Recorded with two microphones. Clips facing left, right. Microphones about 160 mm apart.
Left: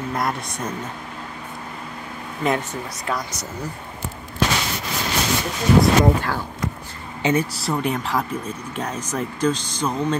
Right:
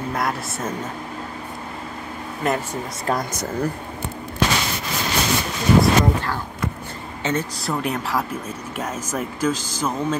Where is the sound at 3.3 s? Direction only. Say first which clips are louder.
Right 7 dB; 55° right (ahead or behind).